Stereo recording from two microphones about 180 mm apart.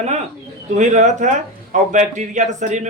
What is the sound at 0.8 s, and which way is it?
A man's voice, 40° right (ahead or behind).